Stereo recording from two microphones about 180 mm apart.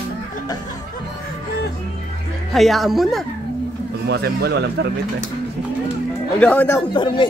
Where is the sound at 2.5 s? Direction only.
Centre (ahead or behind).